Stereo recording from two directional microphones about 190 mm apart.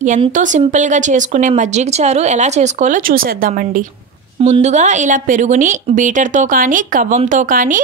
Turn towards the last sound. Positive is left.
turn(degrees=-45)  # may be behind; listen again after turning